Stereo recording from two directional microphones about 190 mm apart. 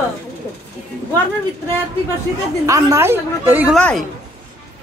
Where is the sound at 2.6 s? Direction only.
15° right (ahead or behind).